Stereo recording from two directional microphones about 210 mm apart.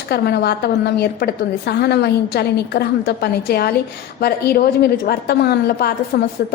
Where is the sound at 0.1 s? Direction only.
50° left (ahead or behind).